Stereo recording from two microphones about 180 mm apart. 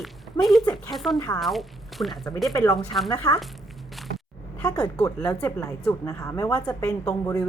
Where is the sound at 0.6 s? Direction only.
20° left (ahead or behind).